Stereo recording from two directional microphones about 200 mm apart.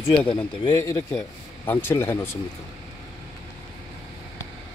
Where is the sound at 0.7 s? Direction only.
20° left (ahead or behind).